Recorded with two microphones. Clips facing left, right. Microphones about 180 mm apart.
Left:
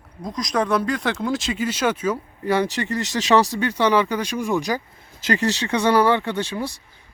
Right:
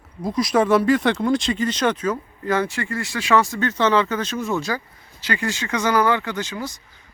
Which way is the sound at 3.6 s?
10° left (ahead or behind).